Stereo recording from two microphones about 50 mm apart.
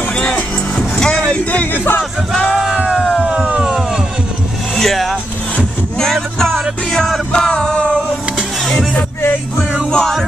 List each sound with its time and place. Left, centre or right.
0.1 s music: centre
1.4 s speech: left
1.7 s speech: left
2.6 s music: centre
4.7 s speech: centre
5.9 s music: centre
9.8 s music: centre